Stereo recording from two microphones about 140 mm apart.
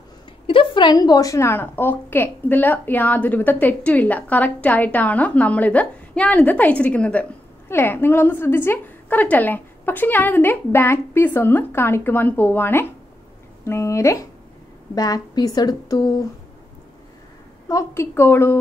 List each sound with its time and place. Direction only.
0.5 s a woman's voice: 35° left (ahead or behind)
17.6 s a woman's voice: 20° left (ahead or behind)